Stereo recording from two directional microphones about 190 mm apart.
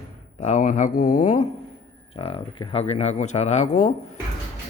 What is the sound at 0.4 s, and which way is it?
Speech, 40° left (ahead or behind).